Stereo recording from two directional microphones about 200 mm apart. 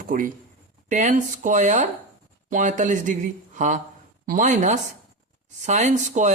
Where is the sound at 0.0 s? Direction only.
45° right (ahead or behind).